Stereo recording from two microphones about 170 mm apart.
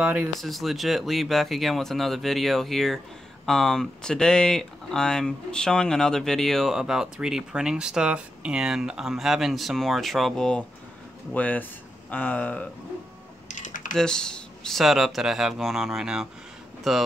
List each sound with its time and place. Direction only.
0.0 s speech: 10° right (ahead or behind); by 12.6 s 10° left (ahead or behind)
13.5 s typing: 50° left (ahead or behind)
13.9 s speech: 5° left (ahead or behind)